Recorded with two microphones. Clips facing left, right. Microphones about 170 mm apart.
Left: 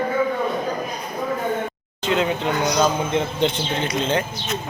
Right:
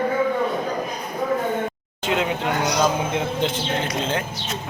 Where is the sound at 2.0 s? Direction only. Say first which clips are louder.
Left 2 dB; 5° right (ahead or behind).